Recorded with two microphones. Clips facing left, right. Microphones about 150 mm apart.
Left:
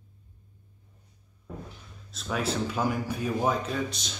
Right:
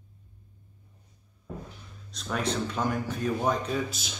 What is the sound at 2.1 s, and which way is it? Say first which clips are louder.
Speech: even; 5° left (ahead or behind).